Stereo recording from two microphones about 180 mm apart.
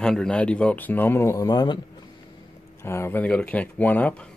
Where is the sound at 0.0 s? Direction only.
5° left (ahead or behind); by 1.8 s 20° left (ahead or behind).